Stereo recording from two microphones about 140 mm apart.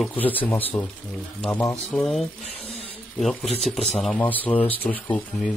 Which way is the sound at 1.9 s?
Centre (ahead or behind).